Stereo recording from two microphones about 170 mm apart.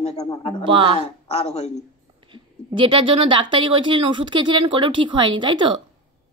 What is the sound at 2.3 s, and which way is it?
Speech, 30° right (ahead or behind).